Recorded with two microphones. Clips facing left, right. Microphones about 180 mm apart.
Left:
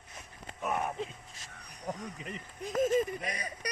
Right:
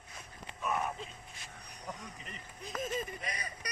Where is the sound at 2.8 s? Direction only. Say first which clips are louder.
Left 10 dB; 40° left (ahead or behind).